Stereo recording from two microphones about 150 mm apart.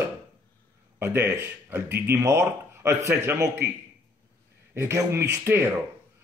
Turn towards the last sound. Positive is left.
turn(degrees=-15)  # may be behind; listen again after turning